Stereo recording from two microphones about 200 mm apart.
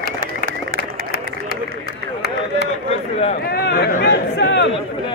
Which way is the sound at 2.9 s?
30° left (ahead or behind).